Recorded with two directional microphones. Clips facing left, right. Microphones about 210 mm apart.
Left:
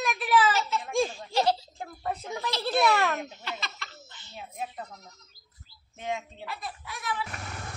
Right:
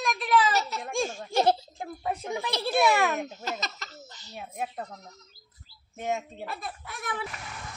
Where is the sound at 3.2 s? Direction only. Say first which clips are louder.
Right 4 dB; 45° right (ahead or behind).